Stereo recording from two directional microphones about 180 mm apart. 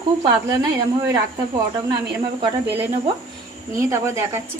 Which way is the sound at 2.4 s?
30° right (ahead or behind).